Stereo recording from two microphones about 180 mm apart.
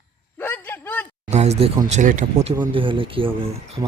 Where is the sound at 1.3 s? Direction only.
40° right (ahead or behind).